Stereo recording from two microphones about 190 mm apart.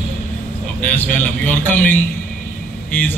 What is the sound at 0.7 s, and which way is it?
Speech, 10° left (ahead or behind).